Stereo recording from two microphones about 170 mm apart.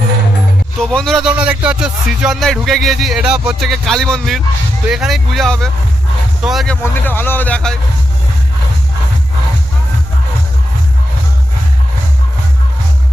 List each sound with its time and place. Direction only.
0.8 s music: centre (ahead or behind)
6.8 s speech: 10° left (ahead or behind)